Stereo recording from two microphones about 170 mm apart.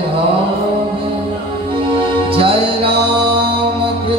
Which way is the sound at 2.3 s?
30° right (ahead or behind).